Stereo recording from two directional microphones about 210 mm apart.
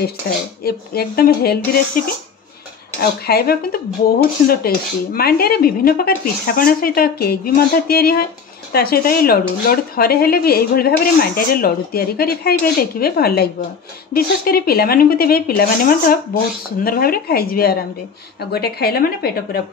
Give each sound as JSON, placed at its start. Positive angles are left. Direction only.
{"t": 0.7, "sound": "speech", "side_deg": 45}